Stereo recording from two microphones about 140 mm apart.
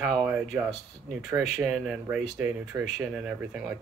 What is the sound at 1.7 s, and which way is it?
Speech, 5° right (ahead or behind).